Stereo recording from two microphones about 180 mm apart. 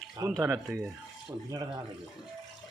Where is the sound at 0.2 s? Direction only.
20° right (ahead or behind).